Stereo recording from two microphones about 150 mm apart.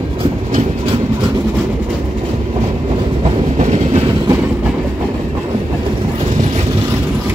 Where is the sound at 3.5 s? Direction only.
45° right (ahead or behind).